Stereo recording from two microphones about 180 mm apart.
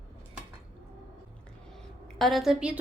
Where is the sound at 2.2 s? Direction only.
Centre (ahead or behind).